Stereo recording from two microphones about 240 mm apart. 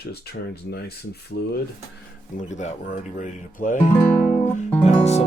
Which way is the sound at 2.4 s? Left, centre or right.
Left.